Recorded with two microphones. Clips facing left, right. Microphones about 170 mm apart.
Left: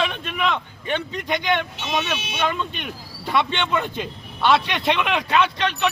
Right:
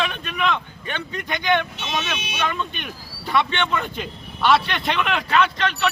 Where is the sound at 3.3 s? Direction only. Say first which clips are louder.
Even; 20° left (ahead or behind).